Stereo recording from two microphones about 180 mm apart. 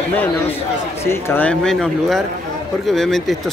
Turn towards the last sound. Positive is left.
turn(degrees=0)  # may be behind; listen again after turning